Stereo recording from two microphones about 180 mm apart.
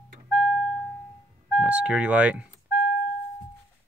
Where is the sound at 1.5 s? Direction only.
5° right (ahead or behind).